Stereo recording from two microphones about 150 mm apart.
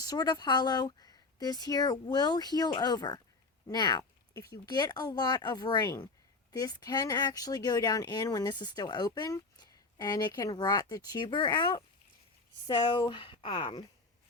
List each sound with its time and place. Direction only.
0.0 s speech: 25° left (ahead or behind)